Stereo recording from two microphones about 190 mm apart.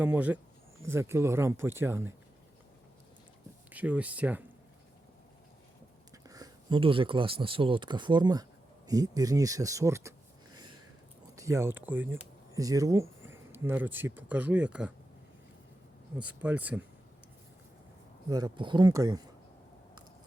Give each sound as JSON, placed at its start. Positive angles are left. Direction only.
{"t": 0.0, "sound": "speech", "side_deg": -10}
{"t": 3.7, "sound": "speech", "side_deg": -10}
{"t": 6.2, "sound": "speech", "side_deg": -20}
{"t": 11.3, "sound": "speech", "side_deg": -15}
{"t": 16.1, "sound": "speech", "side_deg": -5}
{"t": 18.3, "sound": "speech", "side_deg": -20}